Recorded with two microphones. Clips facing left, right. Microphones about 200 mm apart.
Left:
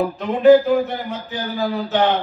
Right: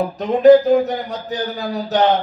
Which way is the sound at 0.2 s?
40° right (ahead or behind).